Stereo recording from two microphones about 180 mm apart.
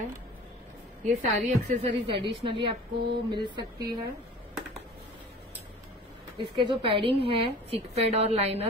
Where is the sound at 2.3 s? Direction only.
25° right (ahead or behind).